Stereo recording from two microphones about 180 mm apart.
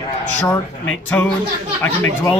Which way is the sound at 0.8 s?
5° left (ahead or behind).